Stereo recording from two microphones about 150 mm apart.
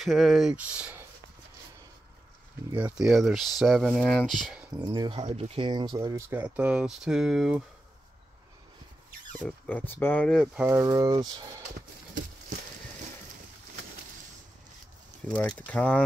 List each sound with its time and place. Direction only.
0.0 s speech: centre (ahead or behind)
3.0 s speech: centre (ahead or behind)
4.8 s speech: 30° right (ahead or behind)
5.2 s speech: 45° right (ahead or behind)
5.7 s speech: 30° right (ahead or behind)
6.3 s speech: 10° right (ahead or behind)
9.4 s speech: 10° left (ahead or behind)
10.6 s speech: 20° right (ahead or behind)
15.2 s speech: 10° left (ahead or behind)